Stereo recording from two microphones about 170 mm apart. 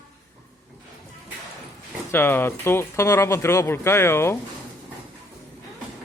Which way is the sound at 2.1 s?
15° left (ahead or behind).